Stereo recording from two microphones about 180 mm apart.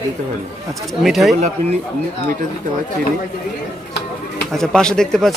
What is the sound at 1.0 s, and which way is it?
Speech, centre (ahead or behind).